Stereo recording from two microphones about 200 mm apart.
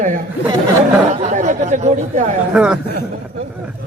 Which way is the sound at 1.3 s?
35° right (ahead or behind).